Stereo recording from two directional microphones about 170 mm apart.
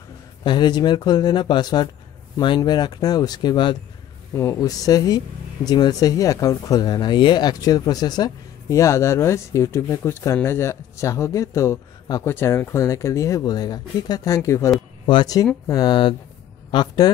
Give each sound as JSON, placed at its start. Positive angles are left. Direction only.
{"t": 0.4, "sound": "speech", "side_deg": 25}